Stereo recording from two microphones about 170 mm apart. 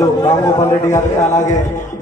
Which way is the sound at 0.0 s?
15° left (ahead or behind).